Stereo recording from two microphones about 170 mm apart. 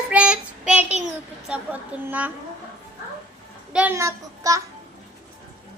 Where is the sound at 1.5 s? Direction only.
10° right (ahead or behind).